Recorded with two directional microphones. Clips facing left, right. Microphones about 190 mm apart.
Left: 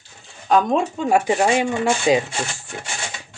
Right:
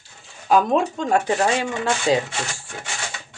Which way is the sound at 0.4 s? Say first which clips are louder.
Even; 5° right (ahead or behind).